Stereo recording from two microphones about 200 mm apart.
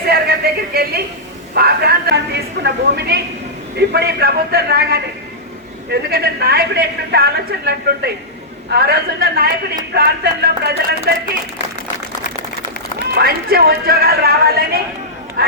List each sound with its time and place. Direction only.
0.1 s a sound: 50° right (ahead or behind)
1.5 s a woman's voice: 50° right (ahead or behind)
13.1 s a woman's voice: 50° right (ahead or behind)